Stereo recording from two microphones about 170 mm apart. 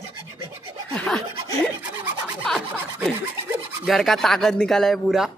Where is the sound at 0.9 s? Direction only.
10° left (ahead or behind).